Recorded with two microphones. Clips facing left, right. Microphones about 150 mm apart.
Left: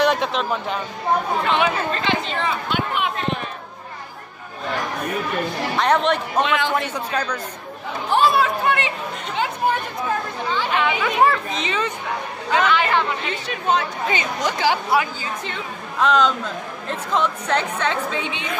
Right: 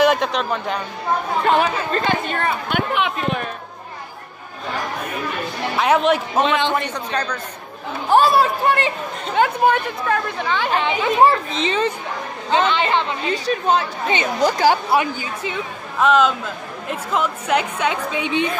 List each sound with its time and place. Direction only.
0.0 s a sound: centre (ahead or behind)
1.5 s speech: 45° right (ahead or behind)
5.8 s speech: 5° right (ahead or behind)
6.4 s speech: 25° right (ahead or behind)
6.7 s a man's voice: 5° left (ahead or behind)
8.1 s speech: 40° right (ahead or behind)
9.3 s speech: 60° right (ahead or behind)
10.7 s speech: 30° right (ahead or behind)
13.3 s speech: 35° right (ahead or behind)
15.4 s a woman's voice: 5° right (ahead or behind)